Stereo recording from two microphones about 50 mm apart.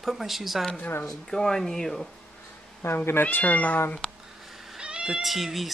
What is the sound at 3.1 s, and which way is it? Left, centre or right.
Speech, left.